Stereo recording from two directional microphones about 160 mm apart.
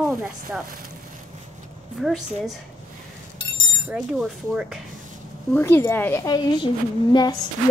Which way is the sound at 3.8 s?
5° right (ahead or behind).